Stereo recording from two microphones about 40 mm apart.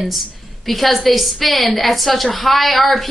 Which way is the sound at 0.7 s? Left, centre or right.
Centre.